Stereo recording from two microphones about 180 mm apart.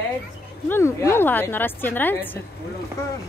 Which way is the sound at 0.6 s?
15° left (ahead or behind).